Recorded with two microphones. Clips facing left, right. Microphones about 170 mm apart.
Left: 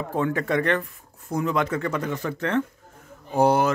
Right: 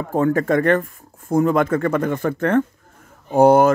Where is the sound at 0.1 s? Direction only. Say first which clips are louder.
Right 7 dB; 45° right (ahead or behind).